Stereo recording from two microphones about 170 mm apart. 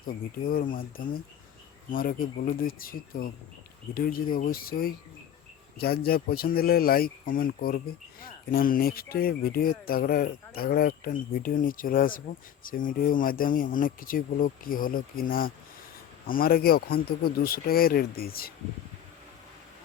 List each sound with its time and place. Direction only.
0.1 s speech: 55° left (ahead or behind)